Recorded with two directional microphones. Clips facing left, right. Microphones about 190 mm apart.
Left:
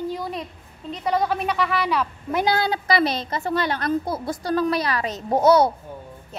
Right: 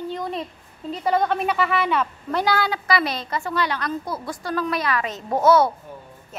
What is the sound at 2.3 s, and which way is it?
A woman's voice, 25° left (ahead or behind).